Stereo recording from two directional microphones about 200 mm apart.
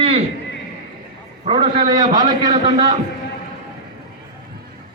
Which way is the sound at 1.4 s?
25° right (ahead or behind).